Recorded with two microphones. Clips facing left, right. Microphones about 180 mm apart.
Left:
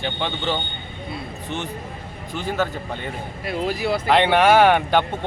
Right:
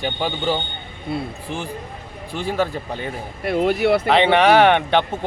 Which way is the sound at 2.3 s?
10° right (ahead or behind).